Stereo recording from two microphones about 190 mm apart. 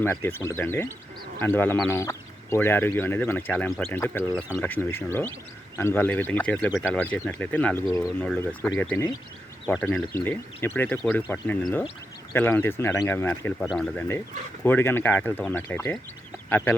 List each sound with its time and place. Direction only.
0.0 s speech: 10° left (ahead or behind)